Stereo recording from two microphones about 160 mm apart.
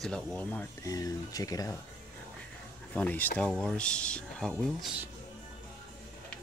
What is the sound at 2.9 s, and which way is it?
Speech, 10° left (ahead or behind).